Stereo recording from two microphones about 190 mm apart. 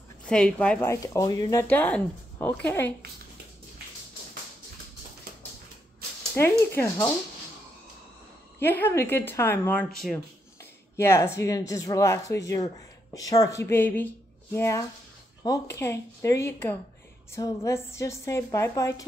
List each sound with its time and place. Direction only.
0.2 s speech: 5° left (ahead or behind)
6.4 s speech: 10° left (ahead or behind)
8.5 s speech: 10° left (ahead or behind)
10.0 s a sound: 10° left (ahead or behind)
11.3 s speech: 15° left (ahead or behind)